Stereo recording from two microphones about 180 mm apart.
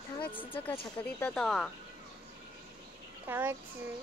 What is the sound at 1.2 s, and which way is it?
Speech, 5° left (ahead or behind).